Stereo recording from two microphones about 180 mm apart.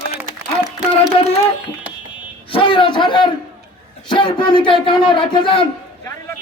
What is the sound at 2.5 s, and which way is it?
A man's voice, 30° left (ahead or behind).